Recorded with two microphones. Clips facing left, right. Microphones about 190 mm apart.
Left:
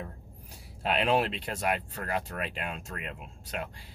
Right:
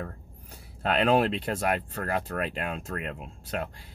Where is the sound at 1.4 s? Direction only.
50° right (ahead or behind).